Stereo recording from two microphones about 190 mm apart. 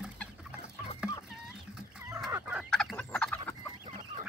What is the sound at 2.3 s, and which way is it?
Fowl, 10° right (ahead or behind).